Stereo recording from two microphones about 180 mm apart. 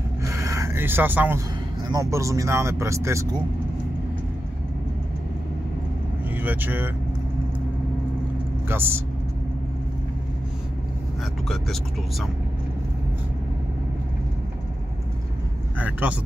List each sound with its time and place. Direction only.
0.2 s rub: 15° right (ahead or behind)
1.9 s speech: 15° right (ahead or behind)
6.3 s speech: 10° right (ahead or behind)
8.6 s speech: 10° right (ahead or behind)
11.4 s speech: centre (ahead or behind)
15.8 s speech: 10° right (ahead or behind)